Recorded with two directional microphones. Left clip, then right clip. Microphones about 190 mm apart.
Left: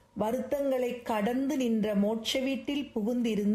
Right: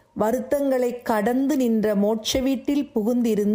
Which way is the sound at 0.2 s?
35° right (ahead or behind).